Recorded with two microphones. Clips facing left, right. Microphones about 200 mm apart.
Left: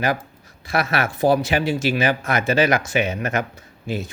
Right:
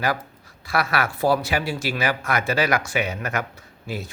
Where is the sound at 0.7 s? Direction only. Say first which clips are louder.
Left 2 dB; 20° left (ahead or behind).